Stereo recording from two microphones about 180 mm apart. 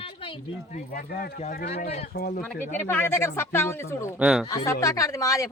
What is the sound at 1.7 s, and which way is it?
Speech, 40° left (ahead or behind).